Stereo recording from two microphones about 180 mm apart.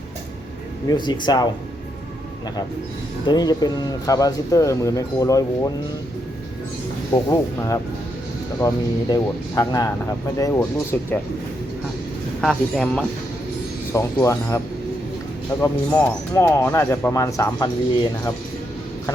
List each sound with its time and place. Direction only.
0.9 s speech: 25° left (ahead or behind)
3.2 s speech: 20° left (ahead or behind)
7.1 s speech: 20° left (ahead or behind)
12.4 s speech: 5° left (ahead or behind)
13.9 s speech: 15° left (ahead or behind)
15.6 s speech: 10° left (ahead or behind)